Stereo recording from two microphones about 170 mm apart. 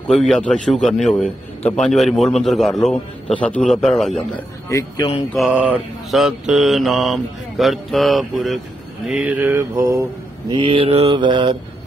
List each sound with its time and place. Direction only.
0.1 s mantra: centre (ahead or behind)
4.6 s speech: 20° left (ahead or behind)
5.3 s mantra: 5° right (ahead or behind)
10.5 s mantra: 30° right (ahead or behind)